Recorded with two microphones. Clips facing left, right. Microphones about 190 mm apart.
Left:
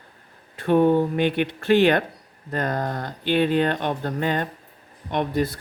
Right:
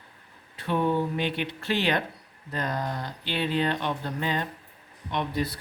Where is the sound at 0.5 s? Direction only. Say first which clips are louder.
Left 8 dB; 50° left (ahead or behind).